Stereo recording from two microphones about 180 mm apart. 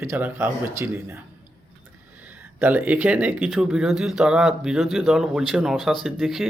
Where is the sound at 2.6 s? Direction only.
10° right (ahead or behind).